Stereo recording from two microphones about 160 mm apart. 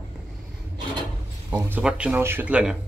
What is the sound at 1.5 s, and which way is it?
Speech, 10° right (ahead or behind).